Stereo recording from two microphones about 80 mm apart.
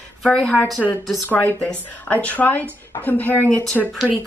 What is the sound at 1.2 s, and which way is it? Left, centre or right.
Speech, centre.